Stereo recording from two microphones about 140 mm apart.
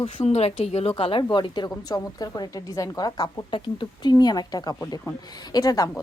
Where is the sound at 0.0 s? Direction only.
45° left (ahead or behind); by 5.9 s 25° left (ahead or behind).